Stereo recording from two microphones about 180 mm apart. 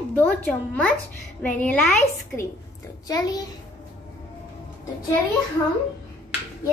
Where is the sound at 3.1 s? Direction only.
20° left (ahead or behind).